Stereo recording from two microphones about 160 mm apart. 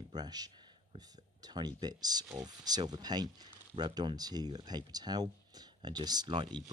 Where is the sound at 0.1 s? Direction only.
25° right (ahead or behind).